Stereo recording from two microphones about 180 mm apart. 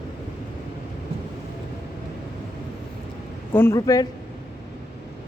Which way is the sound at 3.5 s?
15° left (ahead or behind).